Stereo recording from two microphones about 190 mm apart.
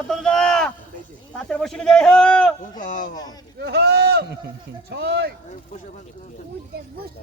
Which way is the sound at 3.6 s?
55° right (ahead or behind).